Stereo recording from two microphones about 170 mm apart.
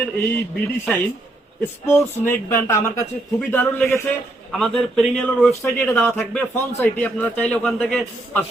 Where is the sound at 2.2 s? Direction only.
15° left (ahead or behind).